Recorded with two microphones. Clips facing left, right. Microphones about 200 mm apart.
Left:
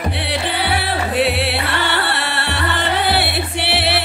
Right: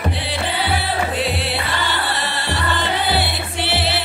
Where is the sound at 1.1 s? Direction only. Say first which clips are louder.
Left 4 dB; 65° left (ahead or behind).